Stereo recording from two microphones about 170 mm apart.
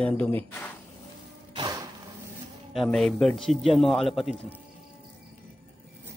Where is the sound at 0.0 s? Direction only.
10° left (ahead or behind).